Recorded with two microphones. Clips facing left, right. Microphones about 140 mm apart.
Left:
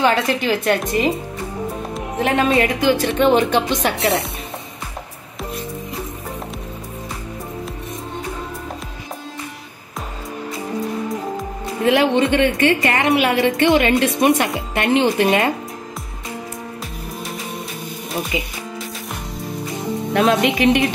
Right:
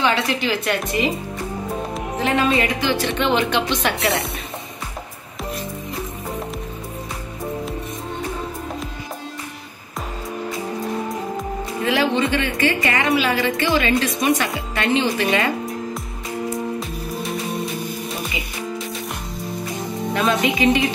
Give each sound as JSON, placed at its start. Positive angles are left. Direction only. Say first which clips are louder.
{"t": 0.0, "sound": "speech", "louder": "left 3 dB", "side_deg": 45}
{"t": 2.3, "sound": "speech", "louder": "left 2 dB", "side_deg": 50}
{"t": 11.8, "sound": "a woman's voice", "louder": "left 4 dB", "side_deg": 60}
{"t": 20.2, "sound": "music", "louder": "left 4 dB", "side_deg": 70}